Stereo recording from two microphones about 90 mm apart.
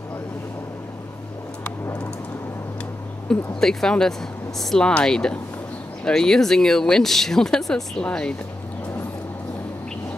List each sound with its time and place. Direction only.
3.3 s speech: 5° left (ahead or behind)